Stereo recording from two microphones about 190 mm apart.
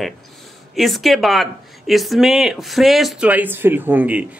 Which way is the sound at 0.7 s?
Centre (ahead or behind).